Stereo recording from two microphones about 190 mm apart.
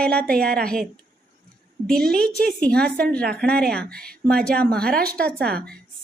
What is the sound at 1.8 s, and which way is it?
A woman's voice, 5° left (ahead or behind).